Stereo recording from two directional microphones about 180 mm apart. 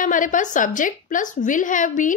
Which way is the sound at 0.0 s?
45° left (ahead or behind).